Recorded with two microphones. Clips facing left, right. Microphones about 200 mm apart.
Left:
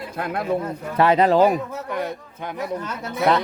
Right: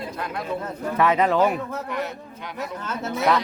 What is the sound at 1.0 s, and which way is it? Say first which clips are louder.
Speech: left 4 dB; 35° left (ahead or behind).